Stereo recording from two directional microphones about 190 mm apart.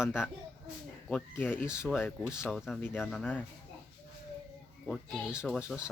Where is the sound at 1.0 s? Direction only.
10° left (ahead or behind).